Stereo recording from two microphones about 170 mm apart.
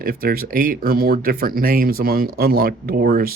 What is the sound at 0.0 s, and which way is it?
Speech, 60° right (ahead or behind).